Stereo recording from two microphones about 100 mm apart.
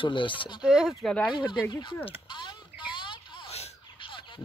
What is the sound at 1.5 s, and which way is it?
Speech, 50° left (ahead or behind).